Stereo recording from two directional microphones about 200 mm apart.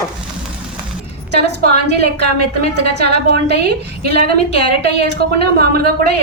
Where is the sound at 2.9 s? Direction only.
55° right (ahead or behind).